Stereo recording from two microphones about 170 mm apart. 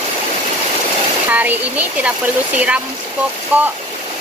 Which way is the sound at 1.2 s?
10° right (ahead or behind).